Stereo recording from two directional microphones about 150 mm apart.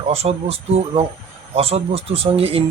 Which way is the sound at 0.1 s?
45° right (ahead or behind).